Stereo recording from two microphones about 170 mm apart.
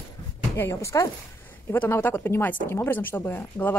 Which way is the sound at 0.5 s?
15° left (ahead or behind).